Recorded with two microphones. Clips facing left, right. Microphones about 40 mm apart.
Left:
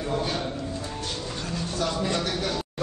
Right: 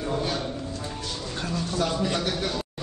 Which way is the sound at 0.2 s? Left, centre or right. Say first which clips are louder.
Even; centre.